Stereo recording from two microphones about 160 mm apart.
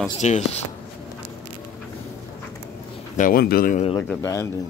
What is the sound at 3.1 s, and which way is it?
Speech, 60° left (ahead or behind).